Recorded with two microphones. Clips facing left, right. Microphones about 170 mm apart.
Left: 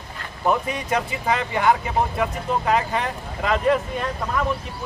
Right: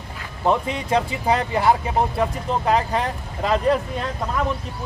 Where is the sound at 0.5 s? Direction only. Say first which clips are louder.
Right 2 dB; 30° right (ahead or behind).